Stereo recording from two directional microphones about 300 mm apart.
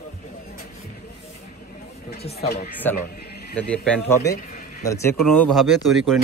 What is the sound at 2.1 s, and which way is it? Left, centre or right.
Speech, left.